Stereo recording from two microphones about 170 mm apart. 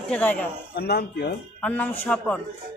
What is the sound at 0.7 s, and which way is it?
Speech, 70° left (ahead or behind).